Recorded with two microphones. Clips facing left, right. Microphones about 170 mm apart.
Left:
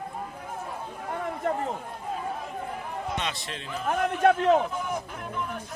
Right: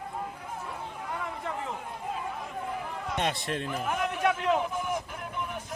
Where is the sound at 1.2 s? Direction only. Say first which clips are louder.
Left 9 dB; 45° left (ahead or behind).